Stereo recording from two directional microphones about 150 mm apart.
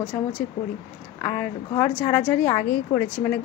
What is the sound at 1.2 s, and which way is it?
A woman's voice, 15° left (ahead or behind).